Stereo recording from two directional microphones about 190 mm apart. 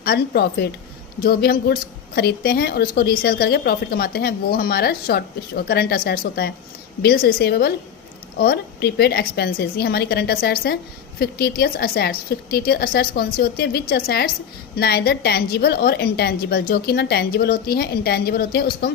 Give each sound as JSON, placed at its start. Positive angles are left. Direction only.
{"t": 0.0, "sound": "a woman's voice", "side_deg": 55}